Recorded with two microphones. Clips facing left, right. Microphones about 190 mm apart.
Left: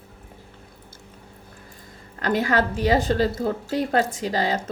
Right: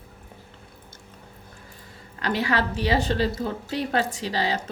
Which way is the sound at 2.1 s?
45° left (ahead or behind).